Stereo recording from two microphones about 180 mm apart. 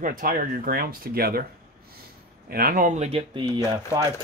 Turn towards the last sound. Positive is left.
turn(degrees=-25)  # may be behind; listen again after turning